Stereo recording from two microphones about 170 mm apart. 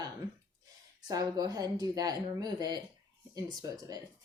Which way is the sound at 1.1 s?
25° right (ahead or behind).